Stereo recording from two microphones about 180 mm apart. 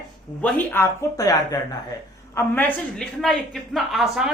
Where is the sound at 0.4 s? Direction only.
10° left (ahead or behind).